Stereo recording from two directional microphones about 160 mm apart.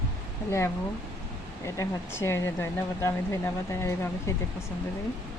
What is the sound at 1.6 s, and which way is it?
Speech, 20° left (ahead or behind).